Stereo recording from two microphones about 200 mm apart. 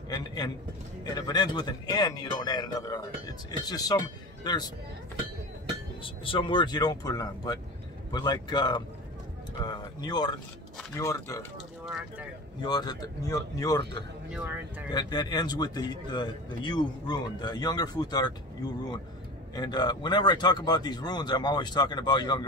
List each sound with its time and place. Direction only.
0.1 s a man's voice: 20° left (ahead or behind)
6.0 s a man's voice: 25° left (ahead or behind)
11.8 s speech: 5° right (ahead or behind)
12.6 s a man's voice: 20° left (ahead or behind)
14.3 s speech: 10° right (ahead or behind)
14.9 s a man's voice: 20° left (ahead or behind)
19.5 s a man's voice: 20° left (ahead or behind)